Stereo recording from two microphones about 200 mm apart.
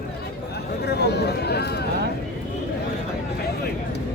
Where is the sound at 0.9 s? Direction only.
55° left (ahead or behind).